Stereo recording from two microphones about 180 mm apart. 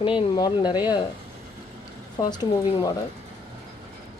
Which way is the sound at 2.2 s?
20° left (ahead or behind).